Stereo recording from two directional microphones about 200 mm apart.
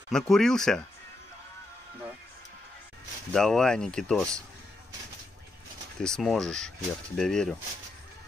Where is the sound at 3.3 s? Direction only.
Centre (ahead or behind).